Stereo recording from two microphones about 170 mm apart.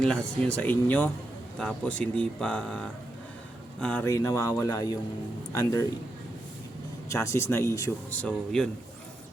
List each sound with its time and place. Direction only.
0.0 s speech: 5° left (ahead or behind)
7.1 s speech: 15° left (ahead or behind)
8.1 s speech: 5° left (ahead or behind)